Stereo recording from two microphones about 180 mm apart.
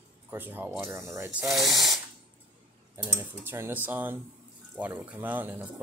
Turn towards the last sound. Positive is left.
turn(degrees=-10)  # may be behind; listen again after turning